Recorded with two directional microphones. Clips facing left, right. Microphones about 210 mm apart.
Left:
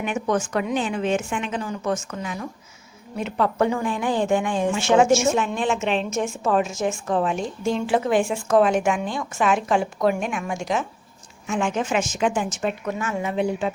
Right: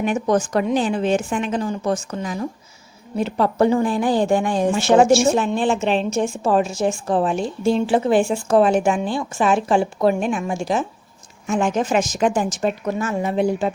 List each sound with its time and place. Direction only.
0.0 s a woman's voice: 35° right (ahead or behind)